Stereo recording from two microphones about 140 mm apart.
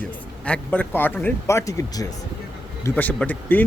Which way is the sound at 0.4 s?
10° left (ahead or behind).